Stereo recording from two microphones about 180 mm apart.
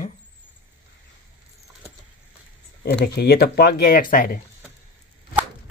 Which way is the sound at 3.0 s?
60° left (ahead or behind).